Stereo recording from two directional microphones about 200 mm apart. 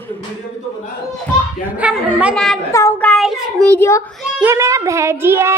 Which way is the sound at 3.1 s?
Centre (ahead or behind).